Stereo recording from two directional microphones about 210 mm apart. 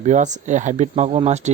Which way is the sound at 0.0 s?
35° right (ahead or behind).